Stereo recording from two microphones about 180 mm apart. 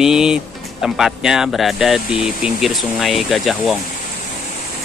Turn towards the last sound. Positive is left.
turn(degrees=0)  # may be behind; listen again after turning